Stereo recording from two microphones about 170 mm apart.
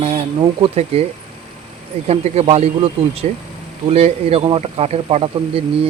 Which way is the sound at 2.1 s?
40° right (ahead or behind).